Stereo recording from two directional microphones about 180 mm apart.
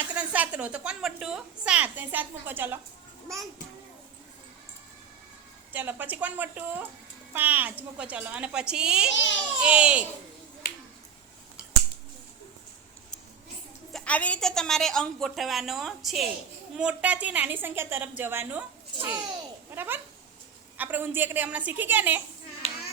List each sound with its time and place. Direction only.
0.2 s a woman's voice: 10° right (ahead or behind)
5.7 s a woman's voice: 10° right (ahead or behind)
9.1 s speech: 90° left
9.6 s a woman's voice: 5° right (ahead or behind)
13.9 s a woman's voice: 5° left (ahead or behind); by 18.6 s 10° right (ahead or behind)
19.7 s a woman's voice: 10° right (ahead or behind)
22.6 s clapping: 35° left (ahead or behind)